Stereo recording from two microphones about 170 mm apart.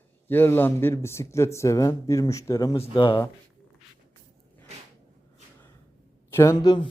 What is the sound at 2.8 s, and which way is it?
Speech, 30° left (ahead or behind).